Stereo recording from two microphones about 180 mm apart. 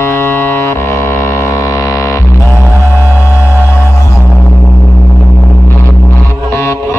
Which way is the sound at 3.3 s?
10° right (ahead or behind).